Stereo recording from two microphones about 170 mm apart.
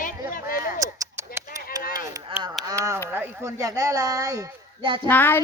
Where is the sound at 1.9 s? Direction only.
25° right (ahead or behind).